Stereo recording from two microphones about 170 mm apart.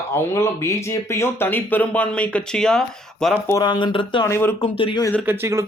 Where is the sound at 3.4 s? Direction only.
20° left (ahead or behind).